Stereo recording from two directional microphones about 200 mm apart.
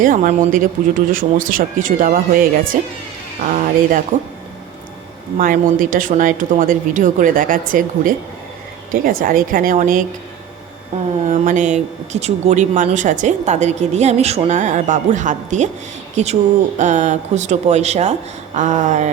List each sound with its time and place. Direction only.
0.0 s speech: 40° right (ahead or behind)
5.4 s speech: 45° right (ahead or behind)